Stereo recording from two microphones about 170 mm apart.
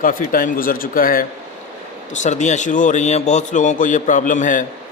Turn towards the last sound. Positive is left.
turn(degrees=50)  # may be behind; listen again after turning